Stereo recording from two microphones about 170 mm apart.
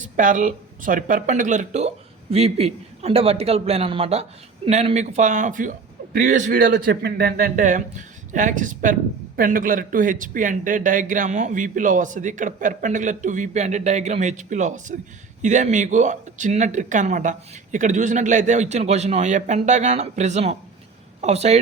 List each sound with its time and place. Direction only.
0.0 s a man's voice: 50° right (ahead or behind)